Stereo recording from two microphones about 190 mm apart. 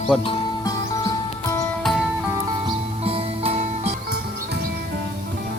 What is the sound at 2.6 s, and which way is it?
Music, 30° right (ahead or behind).